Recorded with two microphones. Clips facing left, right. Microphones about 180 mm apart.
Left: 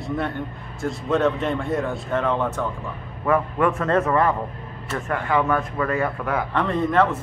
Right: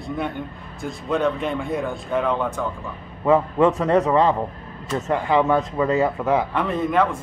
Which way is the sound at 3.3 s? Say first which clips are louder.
Right 4 dB; 20° right (ahead or behind).